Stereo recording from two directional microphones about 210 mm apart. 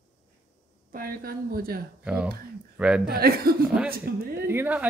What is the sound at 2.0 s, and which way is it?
Speech, 5° right (ahead or behind).